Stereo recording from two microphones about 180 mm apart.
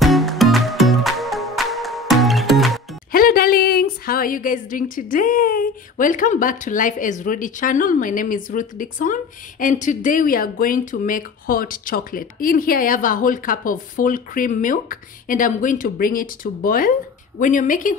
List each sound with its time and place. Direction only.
0.0 s music: centre (ahead or behind)
3.1 s speech: 55° left (ahead or behind)